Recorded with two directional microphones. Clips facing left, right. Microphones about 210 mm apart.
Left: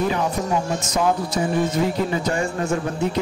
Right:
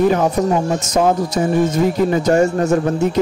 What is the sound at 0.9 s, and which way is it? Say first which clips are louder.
A man's voice: right 5 dB; 45° right (ahead or behind).